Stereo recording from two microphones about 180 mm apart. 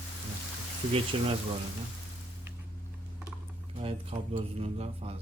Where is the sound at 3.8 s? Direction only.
35° right (ahead or behind).